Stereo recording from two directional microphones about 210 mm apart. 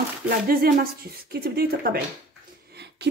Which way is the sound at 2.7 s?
50° right (ahead or behind).